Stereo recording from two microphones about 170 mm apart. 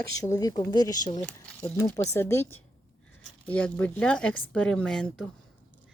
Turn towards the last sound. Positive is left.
turn(degrees=5)  # may be behind; listen again after turning